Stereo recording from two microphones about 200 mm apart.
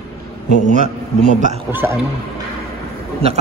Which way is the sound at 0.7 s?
35° right (ahead or behind).